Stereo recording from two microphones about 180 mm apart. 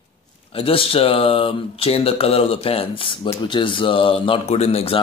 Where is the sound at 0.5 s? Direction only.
30° left (ahead or behind).